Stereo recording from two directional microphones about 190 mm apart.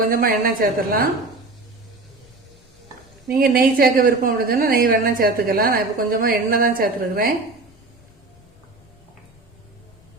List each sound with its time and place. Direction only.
0.0 s a woman's voice: 50° right (ahead or behind)
3.2 s a woman's voice: 50° right (ahead or behind)